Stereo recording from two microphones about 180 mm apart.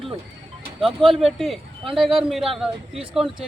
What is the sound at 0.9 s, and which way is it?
Speech, 30° right (ahead or behind).